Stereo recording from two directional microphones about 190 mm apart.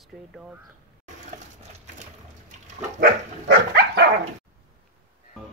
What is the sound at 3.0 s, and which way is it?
Dog, 55° right (ahead or behind).